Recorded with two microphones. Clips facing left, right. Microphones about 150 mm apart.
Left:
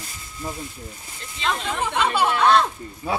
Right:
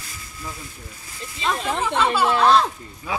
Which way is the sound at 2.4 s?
Centre (ahead or behind).